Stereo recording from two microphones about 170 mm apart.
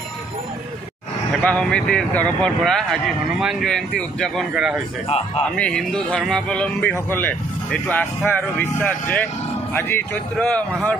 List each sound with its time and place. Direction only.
1.4 s speech: 5° left (ahead or behind)
5.0 s speech: 35° left (ahead or behind)
5.6 s speech: 5° left (ahead or behind)